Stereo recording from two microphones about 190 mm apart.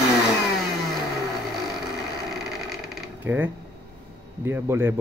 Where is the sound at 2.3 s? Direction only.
Centre (ahead or behind).